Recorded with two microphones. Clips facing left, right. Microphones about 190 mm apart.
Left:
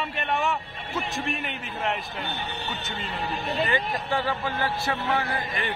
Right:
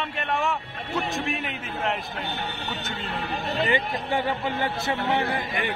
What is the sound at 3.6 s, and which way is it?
A man's voice, 15° right (ahead or behind).